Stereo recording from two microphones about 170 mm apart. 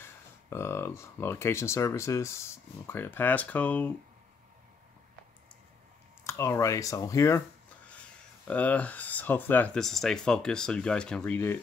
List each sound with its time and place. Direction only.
0.0 s speech: 15° left (ahead or behind)
6.2 s speech: 15° left (ahead or behind)
8.5 s speech: 10° left (ahead or behind)